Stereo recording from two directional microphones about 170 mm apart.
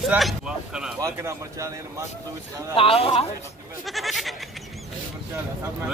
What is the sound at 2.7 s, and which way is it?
Speech, 35° left (ahead or behind).